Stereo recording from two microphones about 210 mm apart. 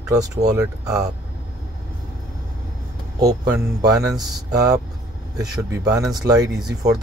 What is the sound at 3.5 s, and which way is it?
Speech, 15° right (ahead or behind).